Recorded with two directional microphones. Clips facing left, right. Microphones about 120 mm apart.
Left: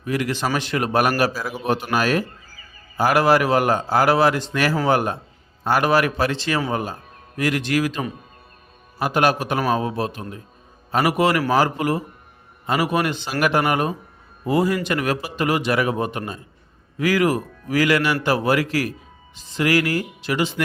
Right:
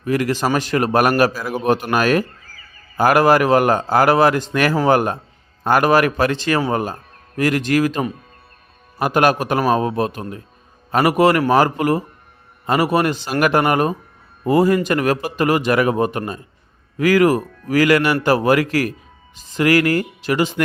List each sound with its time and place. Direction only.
0.0 s a man's voice: 45° right (ahead or behind)
1.3 s a man's voice: 5° left (ahead or behind)
1.5 s a man's voice: 50° right (ahead or behind)